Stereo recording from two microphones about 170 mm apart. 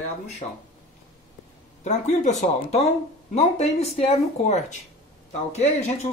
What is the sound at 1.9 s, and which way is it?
Speech, 45° left (ahead or behind).